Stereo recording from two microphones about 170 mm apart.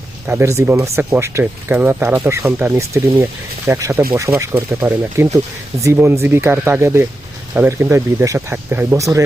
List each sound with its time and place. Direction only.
0.3 s speech: 15° right (ahead or behind)